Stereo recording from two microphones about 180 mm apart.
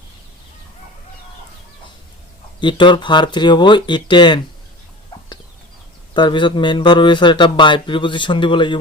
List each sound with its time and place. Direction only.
2.6 s speech: 25° left (ahead or behind)
6.1 s speech: 25° left (ahead or behind)